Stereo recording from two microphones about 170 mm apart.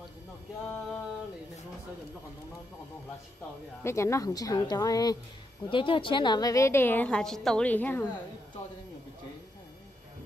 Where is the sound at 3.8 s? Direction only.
15° left (ahead or behind).